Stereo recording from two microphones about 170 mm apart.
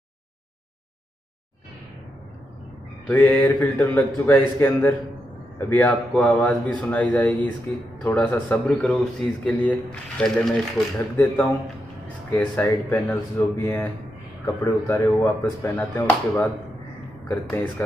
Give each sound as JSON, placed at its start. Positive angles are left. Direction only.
{"t": 3.1, "sound": "a man's voice", "side_deg": 10}